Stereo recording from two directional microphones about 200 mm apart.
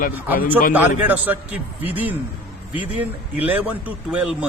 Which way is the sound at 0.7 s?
10° right (ahead or behind).